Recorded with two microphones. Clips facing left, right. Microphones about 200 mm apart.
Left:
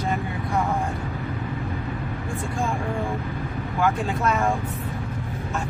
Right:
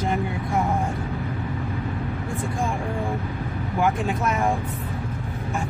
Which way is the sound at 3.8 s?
20° right (ahead or behind).